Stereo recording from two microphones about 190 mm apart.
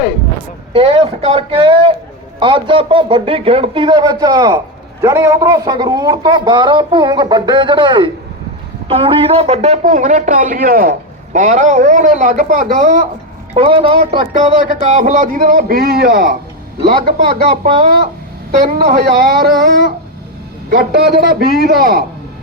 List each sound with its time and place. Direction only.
0.7 s a man's voice: 30° right (ahead or behind)
13.5 s a man's voice: 30° right (ahead or behind)
14.4 s a man's voice: 40° right (ahead or behind)